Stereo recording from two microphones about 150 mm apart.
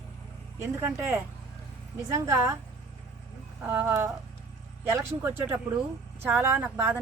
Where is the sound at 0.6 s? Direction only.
15° right (ahead or behind).